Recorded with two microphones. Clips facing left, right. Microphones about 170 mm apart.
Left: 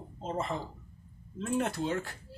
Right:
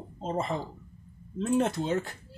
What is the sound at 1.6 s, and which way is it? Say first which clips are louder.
Speech: right 4 dB; 20° right (ahead or behind).